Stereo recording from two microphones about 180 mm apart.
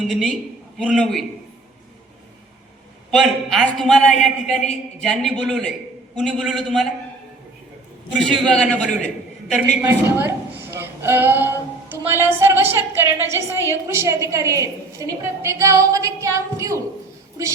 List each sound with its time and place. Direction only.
0.1 s a man's voice: 5° left (ahead or behind)
3.1 s a man's voice: centre (ahead or behind)
8.2 s a man's voice: 5° left (ahead or behind)
9.8 s a man's voice: 10° right (ahead or behind)